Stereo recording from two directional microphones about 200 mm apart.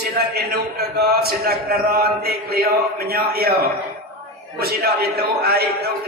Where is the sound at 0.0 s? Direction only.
55° right (ahead or behind).